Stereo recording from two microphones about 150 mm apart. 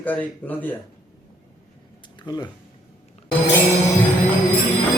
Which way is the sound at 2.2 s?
25° left (ahead or behind).